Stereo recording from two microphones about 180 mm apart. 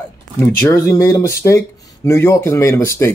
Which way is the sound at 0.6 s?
15° left (ahead or behind).